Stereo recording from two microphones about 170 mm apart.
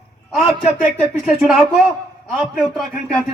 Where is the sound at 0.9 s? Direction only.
Centre (ahead or behind).